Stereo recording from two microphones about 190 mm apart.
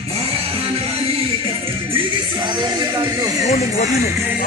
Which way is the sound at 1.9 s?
25° right (ahead or behind).